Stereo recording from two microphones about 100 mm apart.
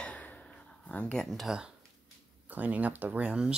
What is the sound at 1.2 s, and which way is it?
Speech, centre (ahead or behind).